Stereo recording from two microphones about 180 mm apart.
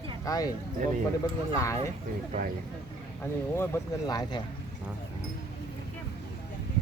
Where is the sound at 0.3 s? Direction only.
20° left (ahead or behind).